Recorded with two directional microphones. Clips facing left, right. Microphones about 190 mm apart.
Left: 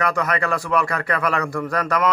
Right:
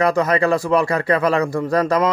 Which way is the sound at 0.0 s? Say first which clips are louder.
Right 6 dB; 30° right (ahead or behind).